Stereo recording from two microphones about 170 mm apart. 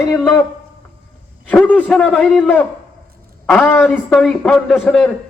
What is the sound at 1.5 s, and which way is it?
A man's voice, 10° left (ahead or behind).